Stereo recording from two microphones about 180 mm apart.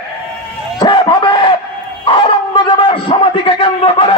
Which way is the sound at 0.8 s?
25° left (ahead or behind).